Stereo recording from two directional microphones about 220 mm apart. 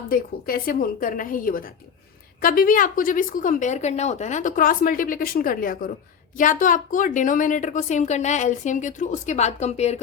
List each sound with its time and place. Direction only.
0.1 s a woman's voice: 40° left (ahead or behind)